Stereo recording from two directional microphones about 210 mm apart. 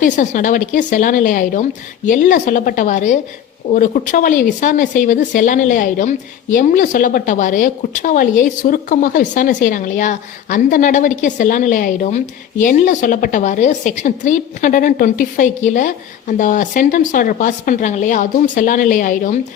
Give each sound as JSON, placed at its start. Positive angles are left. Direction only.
{"t": 0.0, "sound": "speech", "side_deg": 40}